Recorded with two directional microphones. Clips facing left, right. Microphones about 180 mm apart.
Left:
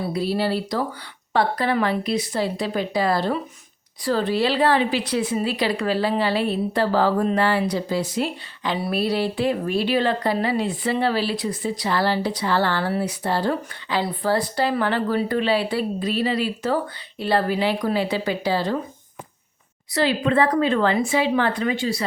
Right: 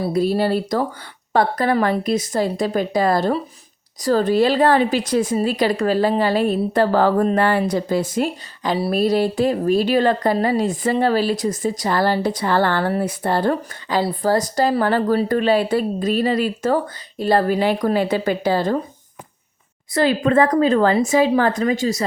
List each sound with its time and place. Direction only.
0.0 s a woman's voice: 45° right (ahead or behind)
19.9 s a woman's voice: 45° right (ahead or behind)